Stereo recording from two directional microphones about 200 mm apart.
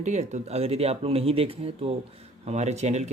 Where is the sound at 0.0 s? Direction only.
35° right (ahead or behind).